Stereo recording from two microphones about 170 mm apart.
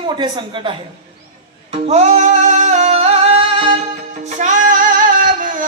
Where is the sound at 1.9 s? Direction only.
40° right (ahead or behind).